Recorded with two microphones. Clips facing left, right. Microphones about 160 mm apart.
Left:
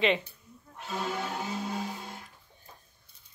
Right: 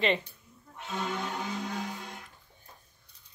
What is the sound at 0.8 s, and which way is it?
Music, 5° left (ahead or behind).